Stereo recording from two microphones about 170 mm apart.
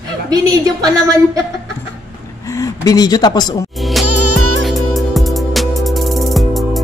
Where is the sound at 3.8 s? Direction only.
Centre (ahead or behind).